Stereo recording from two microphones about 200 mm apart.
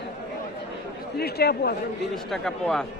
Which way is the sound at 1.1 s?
50° left (ahead or behind).